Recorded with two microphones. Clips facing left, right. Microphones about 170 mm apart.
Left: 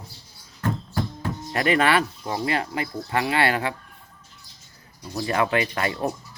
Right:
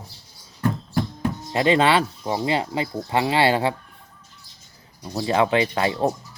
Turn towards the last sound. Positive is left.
turn(degrees=-25)  # may be behind; listen again after turning